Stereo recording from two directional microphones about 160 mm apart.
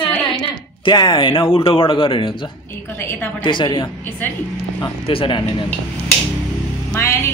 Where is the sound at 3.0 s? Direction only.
15° left (ahead or behind).